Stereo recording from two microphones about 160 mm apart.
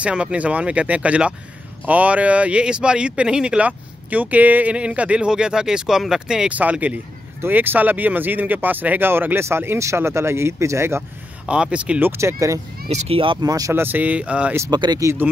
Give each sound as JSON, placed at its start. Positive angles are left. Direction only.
{"t": 0.0, "sound": "speech", "side_deg": -5}
{"t": 12.8, "sound": "speech", "side_deg": -40}
{"t": 14.7, "sound": "speech", "side_deg": -25}